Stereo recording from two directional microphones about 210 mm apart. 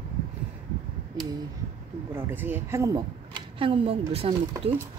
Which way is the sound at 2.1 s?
10° right (ahead or behind).